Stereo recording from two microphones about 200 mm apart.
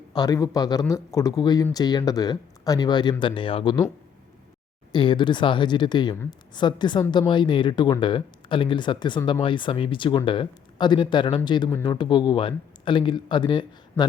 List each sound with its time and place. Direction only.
0.1 s a woman's voice: 20° left (ahead or behind)
4.9 s a woman's voice: 25° left (ahead or behind)